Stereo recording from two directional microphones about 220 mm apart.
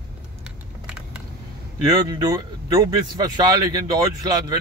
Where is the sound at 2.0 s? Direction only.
15° right (ahead or behind).